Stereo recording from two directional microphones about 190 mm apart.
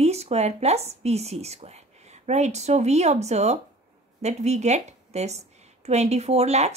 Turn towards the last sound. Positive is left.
turn(degrees=-35)  # may be behind; listen again after turning